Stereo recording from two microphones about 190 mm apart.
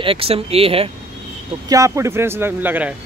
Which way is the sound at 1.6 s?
15° right (ahead or behind).